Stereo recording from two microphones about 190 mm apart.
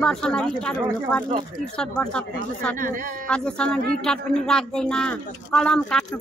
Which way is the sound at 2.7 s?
45° right (ahead or behind).